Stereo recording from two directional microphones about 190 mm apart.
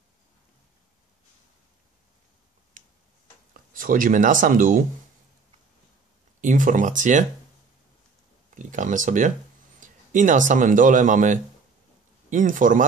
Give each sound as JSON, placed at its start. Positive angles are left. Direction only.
{"t": 2.8, "sound": "tick-tock", "side_deg": -40}
{"t": 3.5, "sound": "speech", "side_deg": -45}
{"t": 6.4, "sound": "speech", "side_deg": -45}
{"t": 8.5, "sound": "speech", "side_deg": -40}